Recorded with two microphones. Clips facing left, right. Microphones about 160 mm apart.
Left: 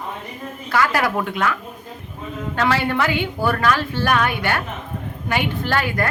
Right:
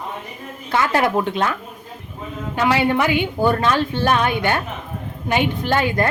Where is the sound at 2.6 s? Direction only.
15° right (ahead or behind).